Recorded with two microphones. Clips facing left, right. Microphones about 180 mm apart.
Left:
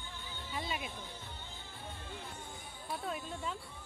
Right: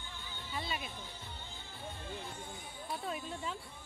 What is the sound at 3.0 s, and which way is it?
Speech, centre (ahead or behind).